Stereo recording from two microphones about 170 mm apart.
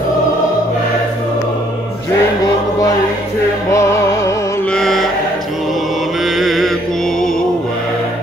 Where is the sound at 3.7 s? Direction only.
15° left (ahead or behind).